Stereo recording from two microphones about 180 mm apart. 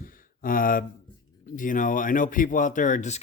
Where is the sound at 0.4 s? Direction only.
50° left (ahead or behind).